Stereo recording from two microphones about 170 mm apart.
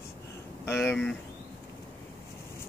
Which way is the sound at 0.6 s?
15° left (ahead or behind).